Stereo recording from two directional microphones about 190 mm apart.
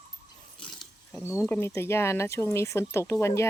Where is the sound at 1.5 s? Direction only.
10° left (ahead or behind).